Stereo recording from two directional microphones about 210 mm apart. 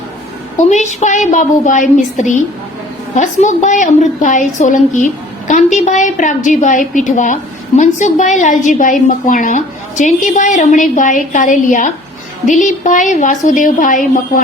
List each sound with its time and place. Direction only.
0.7 s a woman's voice: 35° left (ahead or behind)